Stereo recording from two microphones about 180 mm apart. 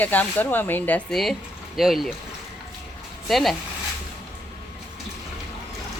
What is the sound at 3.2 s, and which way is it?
Speech, centre (ahead or behind).